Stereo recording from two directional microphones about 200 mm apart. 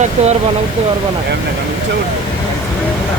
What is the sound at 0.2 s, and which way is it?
Speech, 35° right (ahead or behind).